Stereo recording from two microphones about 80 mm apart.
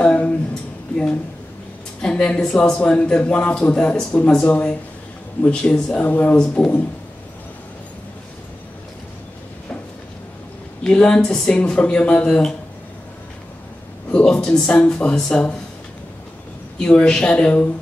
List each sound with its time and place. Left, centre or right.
0.0 s speech: centre
2.0 s a man's voice: centre
5.4 s a man's voice: centre
10.8 s a man's voice: centre
14.1 s a man's voice: centre
16.7 s a man's voice: centre